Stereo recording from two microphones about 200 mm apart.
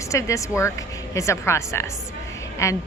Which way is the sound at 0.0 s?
15° left (ahead or behind).